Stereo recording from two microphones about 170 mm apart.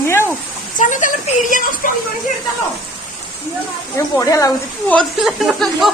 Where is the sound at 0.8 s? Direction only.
50° left (ahead or behind).